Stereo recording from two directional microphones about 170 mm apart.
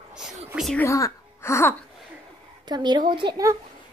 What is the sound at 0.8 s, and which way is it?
Speech, 15° left (ahead or behind).